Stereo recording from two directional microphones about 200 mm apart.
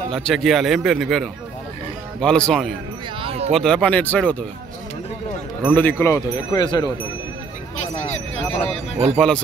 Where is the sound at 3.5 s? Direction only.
5° left (ahead or behind).